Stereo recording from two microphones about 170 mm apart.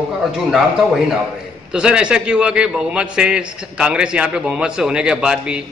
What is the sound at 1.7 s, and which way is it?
A man's voice, 5° right (ahead or behind).